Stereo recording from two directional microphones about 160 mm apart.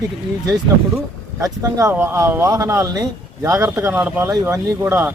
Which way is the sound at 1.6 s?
20° right (ahead or behind).